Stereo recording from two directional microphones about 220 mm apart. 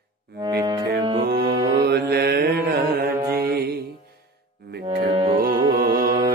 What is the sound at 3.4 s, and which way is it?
Music, 45° right (ahead or behind).